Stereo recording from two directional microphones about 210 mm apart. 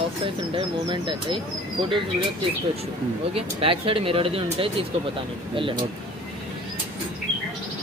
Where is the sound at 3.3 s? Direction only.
25° right (ahead or behind).